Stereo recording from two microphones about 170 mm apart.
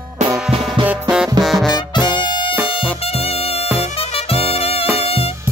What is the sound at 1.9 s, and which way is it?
Music, 25° left (ahead or behind).